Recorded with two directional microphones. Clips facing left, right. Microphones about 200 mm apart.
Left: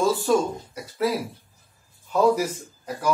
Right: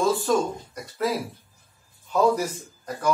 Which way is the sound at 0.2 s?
5° left (ahead or behind).